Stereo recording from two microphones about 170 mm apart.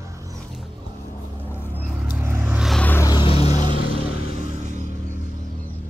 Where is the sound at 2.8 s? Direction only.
10° left (ahead or behind).